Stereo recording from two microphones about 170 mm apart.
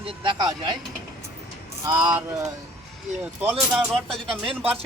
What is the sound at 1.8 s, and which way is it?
Speech, 20° right (ahead or behind).